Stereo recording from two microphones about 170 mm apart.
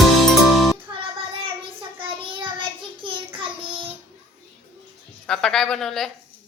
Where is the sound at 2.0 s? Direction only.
30° right (ahead or behind).